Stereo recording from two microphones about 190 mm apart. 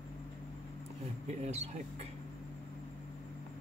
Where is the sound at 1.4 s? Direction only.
35° right (ahead or behind).